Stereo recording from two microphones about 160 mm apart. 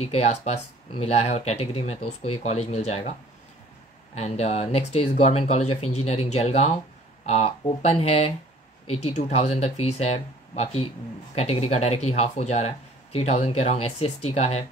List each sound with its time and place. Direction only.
0.0 s speech: 40° left (ahead or behind)